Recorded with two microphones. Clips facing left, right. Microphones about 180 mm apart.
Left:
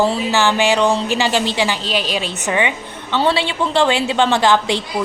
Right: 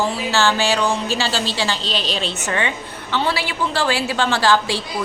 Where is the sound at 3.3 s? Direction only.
25° left (ahead or behind).